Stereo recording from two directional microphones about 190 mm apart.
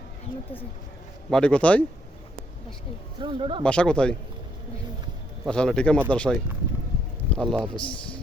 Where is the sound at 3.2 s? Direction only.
25° right (ahead or behind).